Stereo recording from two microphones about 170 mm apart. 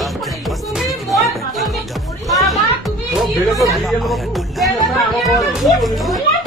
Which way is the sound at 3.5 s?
20° right (ahead or behind).